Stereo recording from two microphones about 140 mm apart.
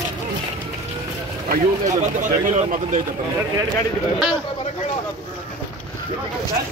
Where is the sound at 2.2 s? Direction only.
65° right (ahead or behind).